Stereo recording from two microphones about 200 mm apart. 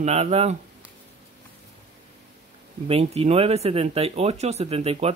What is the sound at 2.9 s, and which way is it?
Speech, 30° right (ahead or behind).